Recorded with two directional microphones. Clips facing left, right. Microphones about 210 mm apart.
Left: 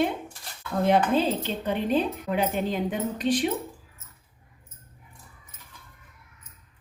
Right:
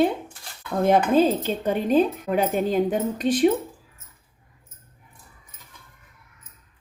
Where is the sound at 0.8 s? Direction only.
45° right (ahead or behind).